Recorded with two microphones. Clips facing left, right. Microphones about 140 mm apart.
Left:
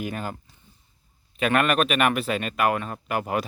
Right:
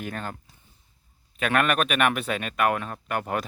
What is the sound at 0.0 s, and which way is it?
Speech, 5° left (ahead or behind).